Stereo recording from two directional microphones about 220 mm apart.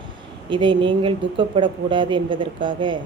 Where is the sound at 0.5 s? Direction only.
20° right (ahead or behind).